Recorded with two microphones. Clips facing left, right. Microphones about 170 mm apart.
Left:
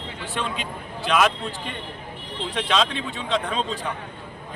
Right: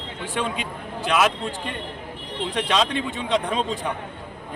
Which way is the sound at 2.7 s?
15° right (ahead or behind).